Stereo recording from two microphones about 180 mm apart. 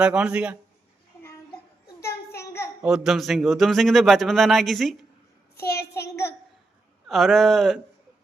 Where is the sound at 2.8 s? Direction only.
5° right (ahead or behind).